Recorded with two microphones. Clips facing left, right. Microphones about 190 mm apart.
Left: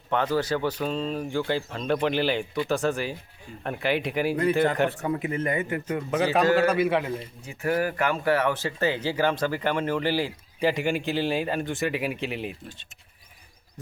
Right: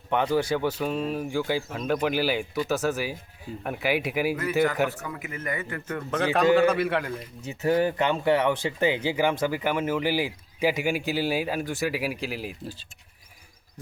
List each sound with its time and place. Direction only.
0.1 s speech: 15° right (ahead or behind)
5.0 s speech: 30° left (ahead or behind)
5.9 s a man's voice: 10° left (ahead or behind)
7.4 s speech: 25° right (ahead or behind); by 12.5 s centre (ahead or behind)